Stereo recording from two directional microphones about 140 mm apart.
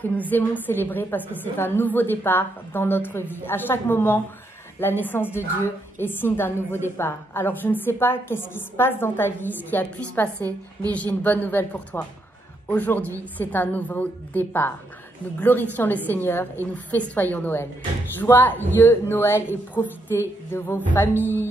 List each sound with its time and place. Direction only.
0.0 s a woman's voice: 10° left (ahead or behind)